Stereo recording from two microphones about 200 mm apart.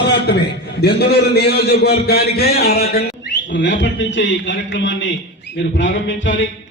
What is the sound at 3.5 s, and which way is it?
A man's voice, 65° left (ahead or behind).